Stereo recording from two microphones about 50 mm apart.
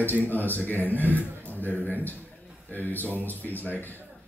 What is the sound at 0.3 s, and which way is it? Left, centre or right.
A man's voice, left.